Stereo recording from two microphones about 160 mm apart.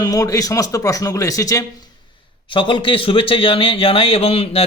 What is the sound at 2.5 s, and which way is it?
Speech, 30° left (ahead or behind).